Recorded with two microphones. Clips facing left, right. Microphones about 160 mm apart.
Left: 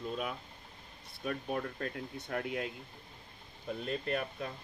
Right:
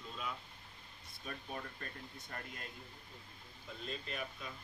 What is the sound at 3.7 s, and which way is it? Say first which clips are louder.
Speech: left 10 dB; 60° left (ahead or behind).